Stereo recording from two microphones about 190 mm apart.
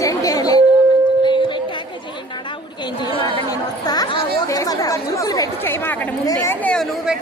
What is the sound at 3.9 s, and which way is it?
Chatter, 20° left (ahead or behind).